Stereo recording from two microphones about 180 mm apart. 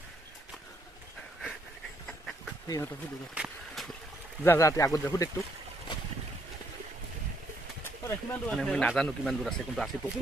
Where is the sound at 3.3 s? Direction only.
5° right (ahead or behind).